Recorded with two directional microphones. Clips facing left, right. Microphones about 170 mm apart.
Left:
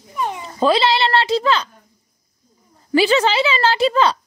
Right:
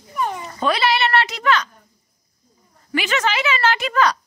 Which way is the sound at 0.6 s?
25° left (ahead or behind).